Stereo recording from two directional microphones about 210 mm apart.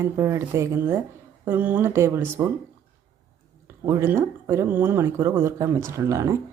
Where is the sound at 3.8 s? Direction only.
10° right (ahead or behind).